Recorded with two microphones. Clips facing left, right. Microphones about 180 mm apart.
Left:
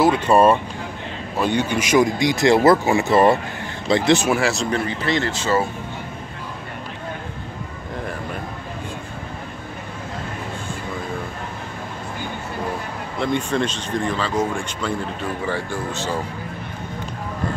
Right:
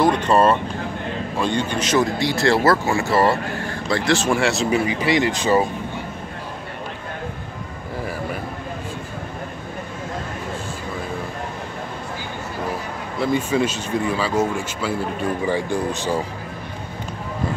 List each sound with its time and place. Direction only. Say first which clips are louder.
0.0 s speech: left 1 dB; 10° left (ahead or behind)
4.3 s speech: right 1 dB; centre (ahead or behind); by 5.7 s 15° right (ahead or behind)
13.2 s speech: right 2 dB; 5° right (ahead or behind)